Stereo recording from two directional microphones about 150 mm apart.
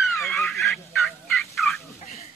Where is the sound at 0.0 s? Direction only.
Centre (ahead or behind).